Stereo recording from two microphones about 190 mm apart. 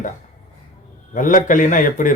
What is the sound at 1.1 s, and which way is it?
A man's voice, 45° left (ahead or behind).